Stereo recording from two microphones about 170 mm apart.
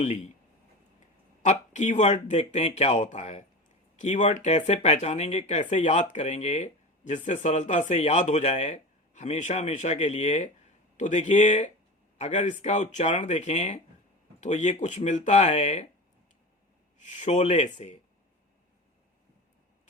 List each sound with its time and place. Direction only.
1.4 s speech: 45° left (ahead or behind)
17.0 s speech: 45° left (ahead or behind)